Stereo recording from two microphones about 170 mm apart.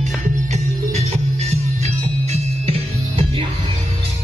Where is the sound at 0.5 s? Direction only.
40° right (ahead or behind).